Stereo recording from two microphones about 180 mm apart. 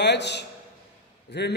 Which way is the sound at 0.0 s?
70° left (ahead or behind).